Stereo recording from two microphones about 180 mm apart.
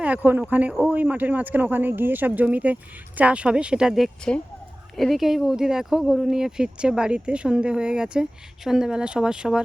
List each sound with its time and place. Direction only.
0.0 s speech: 10° right (ahead or behind)